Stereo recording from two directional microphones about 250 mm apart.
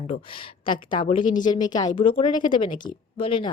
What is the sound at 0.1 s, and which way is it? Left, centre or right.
A woman's voice, left.